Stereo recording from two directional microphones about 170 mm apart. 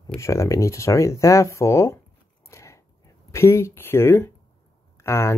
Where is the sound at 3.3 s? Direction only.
15° left (ahead or behind).